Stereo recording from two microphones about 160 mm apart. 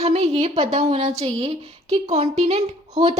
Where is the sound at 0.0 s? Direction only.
40° right (ahead or behind).